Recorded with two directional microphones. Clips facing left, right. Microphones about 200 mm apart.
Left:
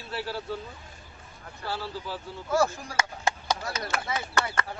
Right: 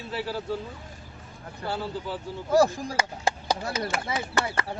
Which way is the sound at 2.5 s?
35° right (ahead or behind).